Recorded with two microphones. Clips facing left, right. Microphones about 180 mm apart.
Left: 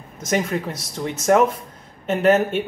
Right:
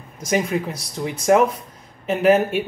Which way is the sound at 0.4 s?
10° right (ahead or behind).